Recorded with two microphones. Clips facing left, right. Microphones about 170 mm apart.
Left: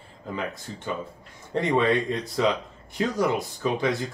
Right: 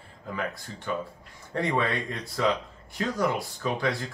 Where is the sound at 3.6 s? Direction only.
20° left (ahead or behind).